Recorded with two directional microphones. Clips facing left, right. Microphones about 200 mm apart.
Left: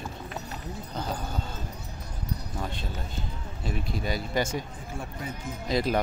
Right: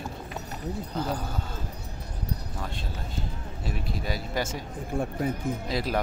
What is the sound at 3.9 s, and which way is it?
Speech, centre (ahead or behind).